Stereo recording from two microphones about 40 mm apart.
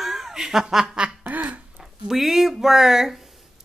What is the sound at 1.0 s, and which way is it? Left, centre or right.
Duck, right.